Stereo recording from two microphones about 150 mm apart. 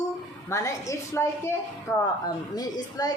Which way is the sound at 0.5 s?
20° left (ahead or behind).